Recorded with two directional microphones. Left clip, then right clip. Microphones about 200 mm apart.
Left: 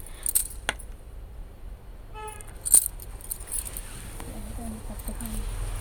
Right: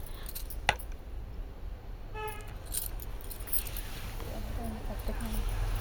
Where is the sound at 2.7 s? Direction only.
55° left (ahead or behind).